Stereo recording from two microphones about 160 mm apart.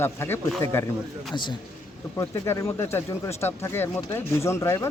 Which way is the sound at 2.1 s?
20° left (ahead or behind).